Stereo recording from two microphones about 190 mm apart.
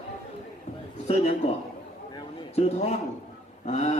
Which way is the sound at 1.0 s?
35° left (ahead or behind).